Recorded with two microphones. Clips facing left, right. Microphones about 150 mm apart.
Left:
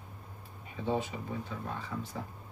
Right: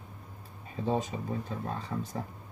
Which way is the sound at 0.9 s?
40° right (ahead or behind).